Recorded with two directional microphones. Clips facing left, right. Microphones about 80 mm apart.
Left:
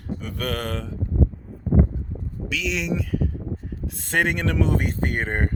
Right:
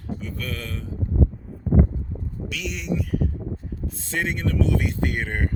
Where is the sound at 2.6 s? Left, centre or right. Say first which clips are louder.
Left 9 dB; left.